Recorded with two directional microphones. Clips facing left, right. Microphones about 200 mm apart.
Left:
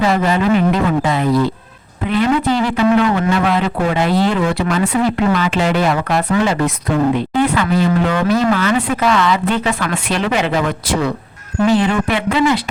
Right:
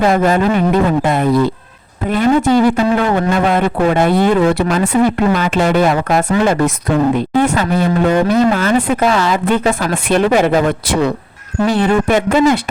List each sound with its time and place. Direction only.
0.0 s a man's voice: 50° right (ahead or behind)
11.6 s a man's voice: 45° right (ahead or behind)